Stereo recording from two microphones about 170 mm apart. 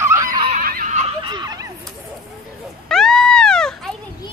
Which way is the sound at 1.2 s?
25° right (ahead or behind).